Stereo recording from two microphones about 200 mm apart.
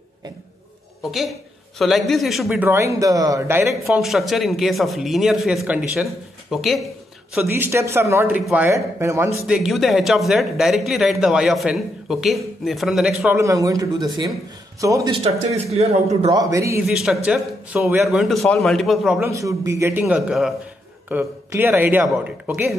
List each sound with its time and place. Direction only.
1.8 s a man's voice: centre (ahead or behind)
7.3 s a man's voice: 10° right (ahead or behind)
9.6 s speech: centre (ahead or behind)
13.4 s a man's voice: 15° right (ahead or behind)
15.2 s speech: 30° right (ahead or behind)
16.3 s a man's voice: 20° right (ahead or behind)
16.8 s speech: centre (ahead or behind)
19.2 s a man's voice: 15° right (ahead or behind)